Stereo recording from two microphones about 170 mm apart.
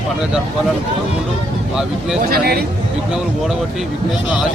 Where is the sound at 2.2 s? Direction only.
60° right (ahead or behind).